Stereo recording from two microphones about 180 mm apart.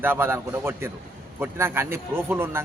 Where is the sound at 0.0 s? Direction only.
10° right (ahead or behind).